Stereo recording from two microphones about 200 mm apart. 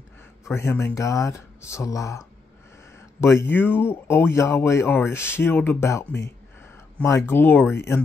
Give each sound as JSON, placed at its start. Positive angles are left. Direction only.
{"t": 0.5, "sound": "speech", "side_deg": 10}